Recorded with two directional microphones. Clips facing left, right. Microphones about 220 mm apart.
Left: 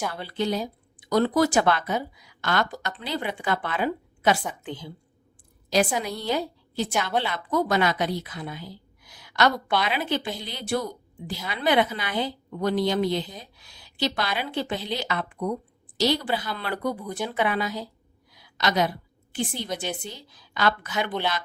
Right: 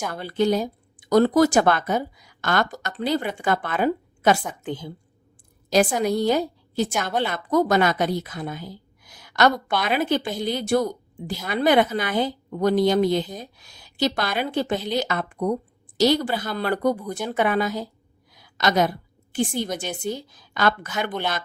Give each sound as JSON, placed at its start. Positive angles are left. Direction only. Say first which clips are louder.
{"t": 0.1, "sound": "a woman's voice", "louder": "right 6 dB", "side_deg": -45}
{"t": 18.3, "sound": "a sound", "louder": "right 3 dB", "side_deg": -45}
{"t": 19.5, "sound": "a woman's voice", "louder": "right 3 dB", "side_deg": -45}